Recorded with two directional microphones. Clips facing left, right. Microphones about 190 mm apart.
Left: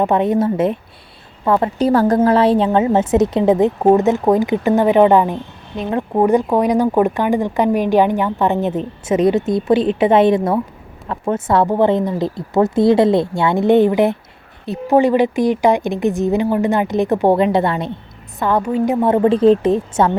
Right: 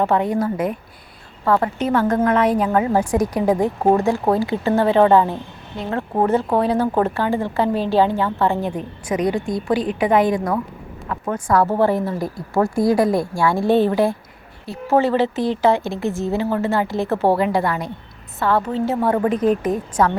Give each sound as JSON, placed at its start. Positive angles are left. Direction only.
{"t": 0.0, "sound": "a woman's voice", "side_deg": 20}
{"t": 1.8, "sound": "a woman's voice", "side_deg": 35}
{"t": 19.0, "sound": "a woman's voice", "side_deg": 25}